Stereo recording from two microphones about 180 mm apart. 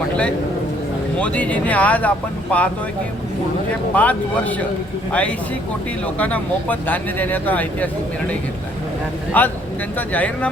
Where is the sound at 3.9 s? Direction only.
10° left (ahead or behind).